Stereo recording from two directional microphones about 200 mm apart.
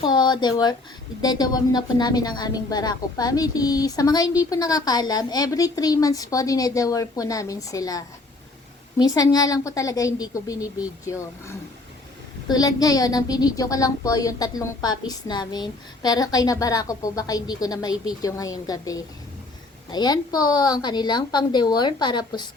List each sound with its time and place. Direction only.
0.0 s a woman's voice: 20° left (ahead or behind)